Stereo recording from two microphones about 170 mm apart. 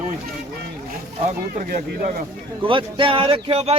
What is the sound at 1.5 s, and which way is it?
Speech, 55° right (ahead or behind).